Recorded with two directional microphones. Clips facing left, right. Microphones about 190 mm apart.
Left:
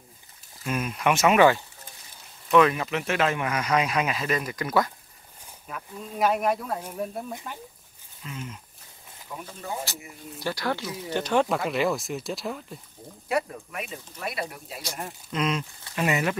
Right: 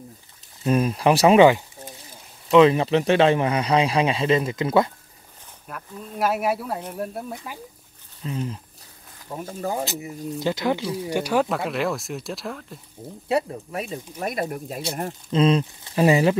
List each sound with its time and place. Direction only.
0.7 s speech: 35° right (ahead or behind)
2.5 s speech: 25° right (ahead or behind)
5.7 s speech: centre (ahead or behind)
8.2 s speech: 35° right (ahead or behind)
9.3 s speech: 45° right (ahead or behind)
10.4 s speech: 20° right (ahead or behind); by 12.6 s centre (ahead or behind)
13.3 s speech: 30° right (ahead or behind)
14.1 s speech: 45° right (ahead or behind)
15.2 s speech: 30° right (ahead or behind)